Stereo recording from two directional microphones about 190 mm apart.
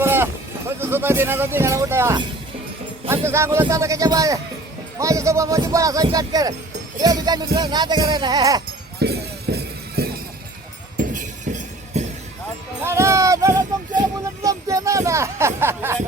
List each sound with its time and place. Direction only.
0.0 s sheep: 10° right (ahead or behind)
0.8 s speech: 10° right (ahead or behind)
7.0 s music: 20° right (ahead or behind)
9.0 s music: 60° right (ahead or behind)
10.9 s music: 40° right (ahead or behind)
12.8 s a sound: 15° right (ahead or behind)